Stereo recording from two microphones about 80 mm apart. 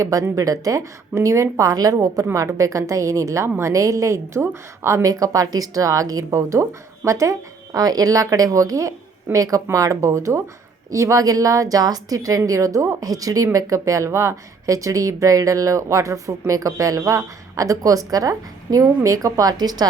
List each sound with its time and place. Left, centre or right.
0.0 s speech: right
4.4 s speech: right